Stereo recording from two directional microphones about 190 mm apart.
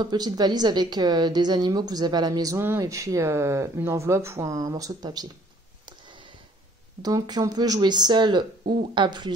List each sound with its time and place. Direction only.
0.0 s a woman's voice: 20° right (ahead or behind)
5.9 s a sound: 25° right (ahead or behind)
7.0 s a woman's voice: 20° right (ahead or behind)